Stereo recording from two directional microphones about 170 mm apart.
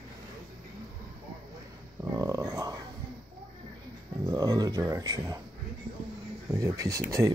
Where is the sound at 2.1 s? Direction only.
20° right (ahead or behind).